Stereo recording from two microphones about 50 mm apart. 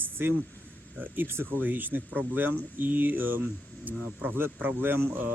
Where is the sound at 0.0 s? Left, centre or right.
Right.